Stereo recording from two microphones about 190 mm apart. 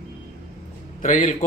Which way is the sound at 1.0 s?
45° left (ahead or behind).